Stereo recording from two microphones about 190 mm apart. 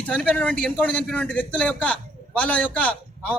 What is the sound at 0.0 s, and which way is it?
A man's voice, 5° left (ahead or behind).